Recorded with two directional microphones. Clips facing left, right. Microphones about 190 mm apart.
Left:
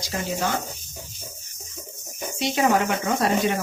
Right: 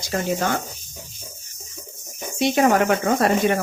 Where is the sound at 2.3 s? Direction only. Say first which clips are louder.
Right 4 dB; 55° right (ahead or behind).